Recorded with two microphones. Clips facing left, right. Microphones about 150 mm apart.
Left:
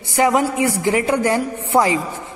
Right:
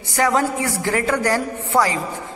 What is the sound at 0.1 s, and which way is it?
A man's voice, 20° left (ahead or behind).